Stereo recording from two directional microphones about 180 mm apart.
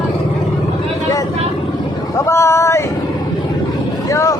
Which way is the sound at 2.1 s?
15° left (ahead or behind).